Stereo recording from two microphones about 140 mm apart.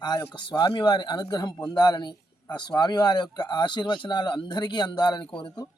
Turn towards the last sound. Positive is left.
turn(degrees=30)  # may be behind; listen again after turning